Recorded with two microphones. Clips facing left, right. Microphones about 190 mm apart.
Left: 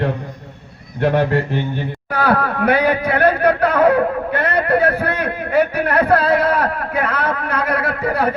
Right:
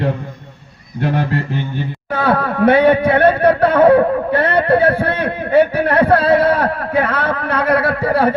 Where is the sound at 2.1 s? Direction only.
25° right (ahead or behind).